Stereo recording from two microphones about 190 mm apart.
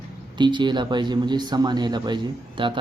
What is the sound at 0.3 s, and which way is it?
Speech, 25° right (ahead or behind).